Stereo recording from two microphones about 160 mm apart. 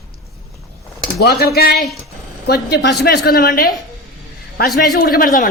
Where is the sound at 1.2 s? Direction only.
80° left.